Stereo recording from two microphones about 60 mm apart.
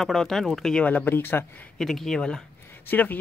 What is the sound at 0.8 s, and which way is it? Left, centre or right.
Speech, left.